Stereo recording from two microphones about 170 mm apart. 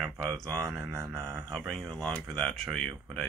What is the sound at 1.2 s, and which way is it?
Speech, 15° right (ahead or behind).